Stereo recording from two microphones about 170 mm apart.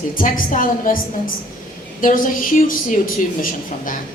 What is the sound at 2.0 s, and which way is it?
Speech, 55° left (ahead or behind).